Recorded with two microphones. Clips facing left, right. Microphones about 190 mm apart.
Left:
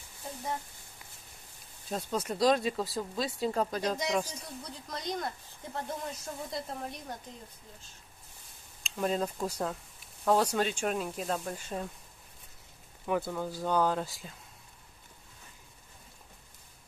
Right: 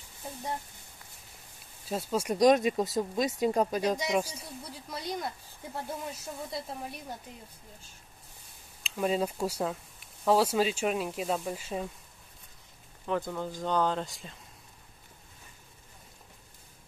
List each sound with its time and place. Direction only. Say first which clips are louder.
1.9 s speech: right 3 dB; 5° right (ahead or behind)
8.8 s speech: right 2 dB; 5° right (ahead or behind)
13.0 s speech: even; 10° left (ahead or behind)